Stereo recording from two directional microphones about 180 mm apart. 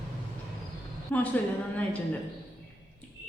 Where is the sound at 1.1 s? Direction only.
10° left (ahead or behind).